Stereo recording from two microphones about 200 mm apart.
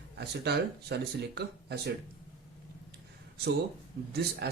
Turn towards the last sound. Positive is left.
turn(degrees=-55)  # may be behind; listen again after turning